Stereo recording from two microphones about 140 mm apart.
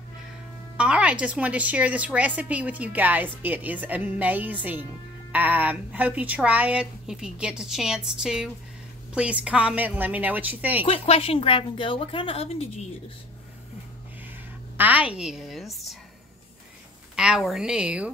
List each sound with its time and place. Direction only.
0.7 s a woman's voice: 5° right (ahead or behind)
10.8 s a woman's voice: 40° left (ahead or behind)
14.8 s a woman's voice: 10° right (ahead or behind)
17.1 s a woman's voice: 5° right (ahead or behind)